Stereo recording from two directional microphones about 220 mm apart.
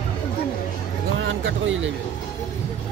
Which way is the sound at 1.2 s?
60° right (ahead or behind).